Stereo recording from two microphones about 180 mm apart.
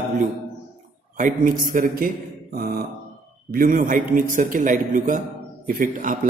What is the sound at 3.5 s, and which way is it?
A man's voice, 50° right (ahead or behind).